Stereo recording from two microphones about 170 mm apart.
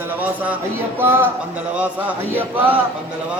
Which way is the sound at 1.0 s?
15° right (ahead or behind).